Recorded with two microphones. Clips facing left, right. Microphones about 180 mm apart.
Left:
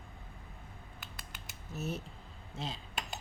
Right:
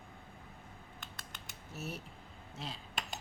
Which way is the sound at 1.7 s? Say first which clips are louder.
Left 5 dB; 20° left (ahead or behind).